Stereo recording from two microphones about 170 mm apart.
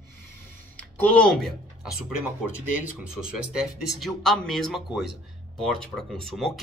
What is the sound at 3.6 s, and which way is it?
Speech, centre (ahead or behind).